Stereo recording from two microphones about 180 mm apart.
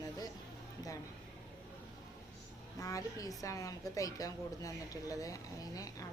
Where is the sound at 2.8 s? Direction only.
20° left (ahead or behind).